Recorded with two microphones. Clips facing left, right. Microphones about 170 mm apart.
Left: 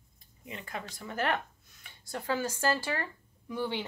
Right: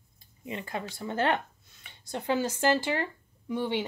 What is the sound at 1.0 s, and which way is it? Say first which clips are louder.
Speech: right 4 dB; 30° right (ahead or behind).